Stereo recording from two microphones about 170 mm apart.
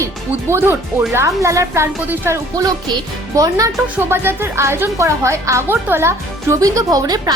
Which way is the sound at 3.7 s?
10° right (ahead or behind).